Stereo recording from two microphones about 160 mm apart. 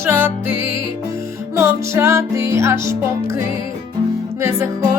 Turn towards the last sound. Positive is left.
turn(degrees=-15)  # may be behind; listen again after turning